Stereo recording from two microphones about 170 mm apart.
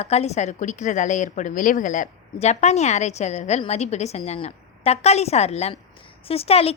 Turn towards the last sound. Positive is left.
turn(degrees=35)  # may be behind; listen again after turning